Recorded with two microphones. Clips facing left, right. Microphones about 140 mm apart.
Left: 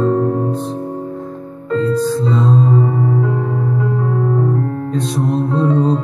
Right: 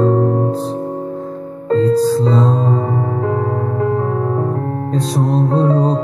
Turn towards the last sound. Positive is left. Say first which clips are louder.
# even
turn(degrees=-35)  # may be behind; listen again after turning